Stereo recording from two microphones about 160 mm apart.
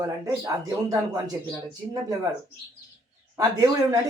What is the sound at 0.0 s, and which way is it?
Speech, 20° right (ahead or behind).